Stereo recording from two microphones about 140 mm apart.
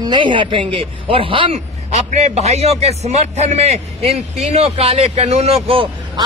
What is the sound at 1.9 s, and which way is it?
A man's voice, 50° right (ahead or behind).